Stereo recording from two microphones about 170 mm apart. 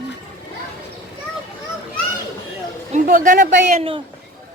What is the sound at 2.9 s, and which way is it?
Speech, 50° right (ahead or behind).